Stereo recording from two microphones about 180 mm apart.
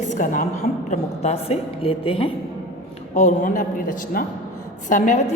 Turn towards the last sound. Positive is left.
turn(degrees=45)  # may be behind; listen again after turning